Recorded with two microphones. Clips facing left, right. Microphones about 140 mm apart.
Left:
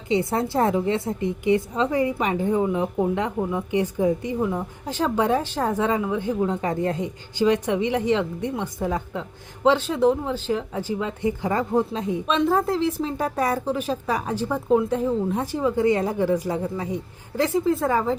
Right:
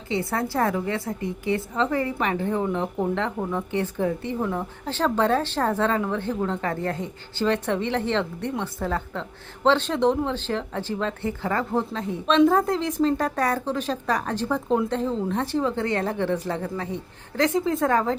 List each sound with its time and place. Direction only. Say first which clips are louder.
0.1 s a woman's voice: left 3 dB; 20° left (ahead or behind)
12.4 s a woman's voice: right 3 dB; centre (ahead or behind)